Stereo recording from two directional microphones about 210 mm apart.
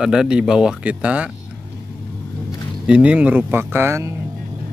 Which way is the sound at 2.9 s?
5° right (ahead or behind).